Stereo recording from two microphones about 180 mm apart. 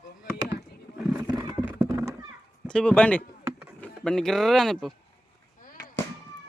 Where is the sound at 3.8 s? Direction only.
5° left (ahead or behind).